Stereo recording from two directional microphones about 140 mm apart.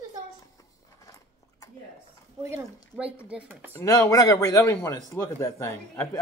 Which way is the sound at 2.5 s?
10° right (ahead or behind).